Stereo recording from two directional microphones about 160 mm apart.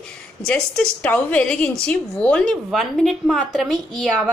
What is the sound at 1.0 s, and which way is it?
A woman's voice, 10° left (ahead or behind).